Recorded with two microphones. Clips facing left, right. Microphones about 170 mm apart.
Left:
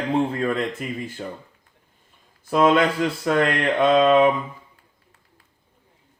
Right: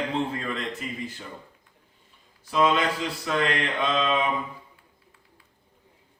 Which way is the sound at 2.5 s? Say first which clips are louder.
Left 5 dB; 50° left (ahead or behind).